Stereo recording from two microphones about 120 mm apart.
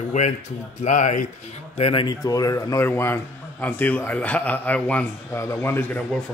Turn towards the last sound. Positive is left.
turn(degrees=20)  # may be behind; listen again after turning